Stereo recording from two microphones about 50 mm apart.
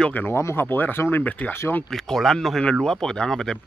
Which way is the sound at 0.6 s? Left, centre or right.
Left.